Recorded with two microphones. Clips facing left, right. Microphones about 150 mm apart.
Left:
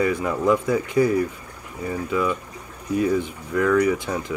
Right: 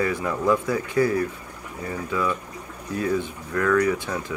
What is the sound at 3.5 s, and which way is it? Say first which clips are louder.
Speech: left 2 dB; 10° left (ahead or behind).